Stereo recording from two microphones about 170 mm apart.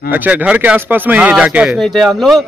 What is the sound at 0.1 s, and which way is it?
A man's voice, 10° right (ahead or behind).